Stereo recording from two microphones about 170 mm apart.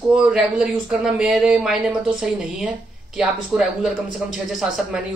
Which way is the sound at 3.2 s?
5° right (ahead or behind).